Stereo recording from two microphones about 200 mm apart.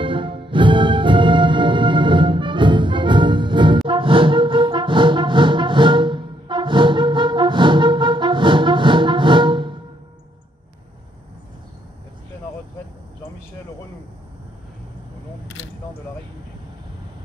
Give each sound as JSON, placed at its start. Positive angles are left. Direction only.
{"t": 0.0, "sound": "music", "side_deg": -25}